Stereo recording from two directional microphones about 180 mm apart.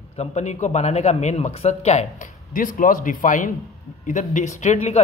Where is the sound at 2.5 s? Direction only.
50° left (ahead or behind).